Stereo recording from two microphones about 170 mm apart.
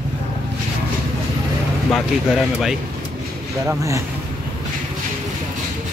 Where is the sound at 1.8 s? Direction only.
Centre (ahead or behind).